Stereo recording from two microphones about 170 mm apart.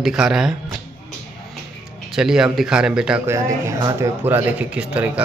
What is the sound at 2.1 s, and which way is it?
A man's voice, 5° right (ahead or behind).